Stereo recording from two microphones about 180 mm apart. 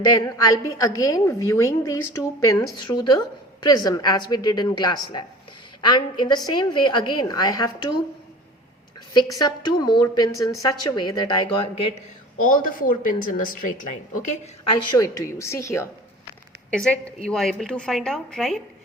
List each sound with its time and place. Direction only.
0.2 s a woman's voice: 20° left (ahead or behind)
9.1 s a woman's voice: 20° left (ahead or behind)
12.4 s a woman's voice: 50° left (ahead or behind)
14.8 s a woman's voice: 20° left (ahead or behind)
16.7 s speech: 5° left (ahead or behind)